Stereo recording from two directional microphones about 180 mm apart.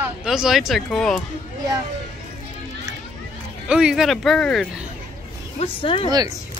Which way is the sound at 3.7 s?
5° right (ahead or behind).